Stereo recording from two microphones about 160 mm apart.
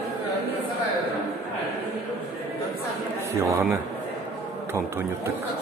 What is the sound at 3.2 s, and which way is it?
Speech, 15° right (ahead or behind).